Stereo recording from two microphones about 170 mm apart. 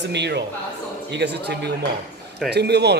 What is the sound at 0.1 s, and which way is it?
A man's voice, 85° right.